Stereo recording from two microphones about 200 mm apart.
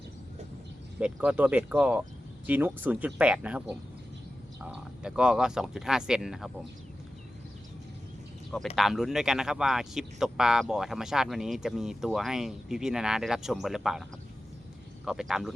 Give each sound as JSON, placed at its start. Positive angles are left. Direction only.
{"t": 0.9, "sound": "speech", "side_deg": -5}
{"t": 8.7, "sound": "speech", "side_deg": 0}
{"t": 15.0, "sound": "speech", "side_deg": 0}